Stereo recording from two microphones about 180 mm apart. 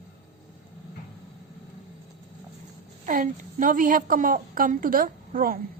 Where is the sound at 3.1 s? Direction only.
50° right (ahead or behind).